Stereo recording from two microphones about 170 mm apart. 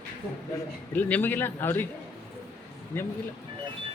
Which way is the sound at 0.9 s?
10° left (ahead or behind).